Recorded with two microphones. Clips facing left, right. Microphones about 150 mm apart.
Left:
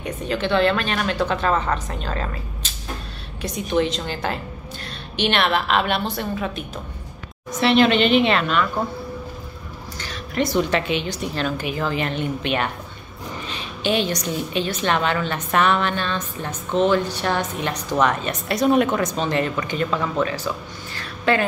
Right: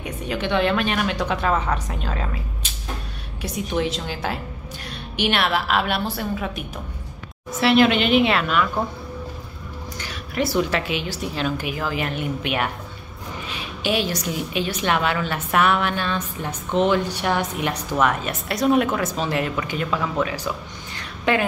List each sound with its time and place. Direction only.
0.0 s a woman's voice: 10° right (ahead or behind)
9.9 s a woman's voice: 10° right (ahead or behind)